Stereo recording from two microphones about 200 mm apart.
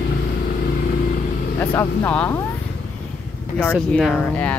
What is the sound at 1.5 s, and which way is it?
Speech, 10° left (ahead or behind).